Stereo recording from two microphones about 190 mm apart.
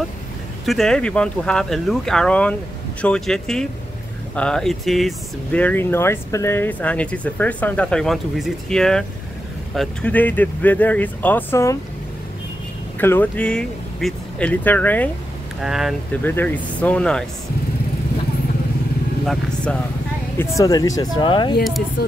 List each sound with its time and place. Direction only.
0.7 s speech: centre (ahead or behind)
13.0 s speech: 10° left (ahead or behind)
15.6 s speech: centre (ahead or behind)
16.3 s speech: 10° left (ahead or behind)
19.2 s speech: 5° left (ahead or behind)
20.3 s speech: 15° left (ahead or behind)